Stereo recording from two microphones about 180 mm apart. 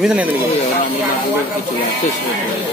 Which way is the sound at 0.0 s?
5° right (ahead or behind).